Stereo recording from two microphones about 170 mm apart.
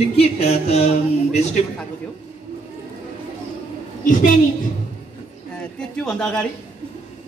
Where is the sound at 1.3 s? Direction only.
40° left (ahead or behind).